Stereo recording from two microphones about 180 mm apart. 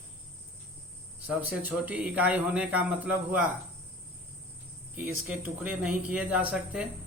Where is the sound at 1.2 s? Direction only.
10° right (ahead or behind).